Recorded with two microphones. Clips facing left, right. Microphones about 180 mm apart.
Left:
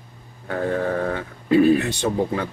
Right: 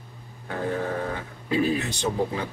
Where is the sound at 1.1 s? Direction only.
55° left (ahead or behind).